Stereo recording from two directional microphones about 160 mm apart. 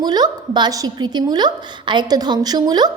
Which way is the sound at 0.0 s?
25° right (ahead or behind).